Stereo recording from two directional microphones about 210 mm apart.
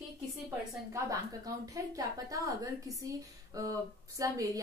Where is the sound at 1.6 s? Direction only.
15° right (ahead or behind).